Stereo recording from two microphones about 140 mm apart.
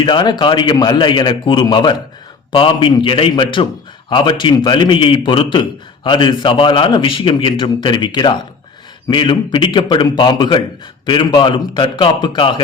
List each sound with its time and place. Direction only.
0.0 s a man's voice: 35° left (ahead or behind)